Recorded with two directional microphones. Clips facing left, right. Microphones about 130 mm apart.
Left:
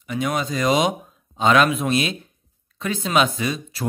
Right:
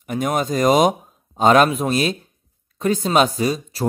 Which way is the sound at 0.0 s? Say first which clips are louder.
Right 3 dB; 45° right (ahead or behind).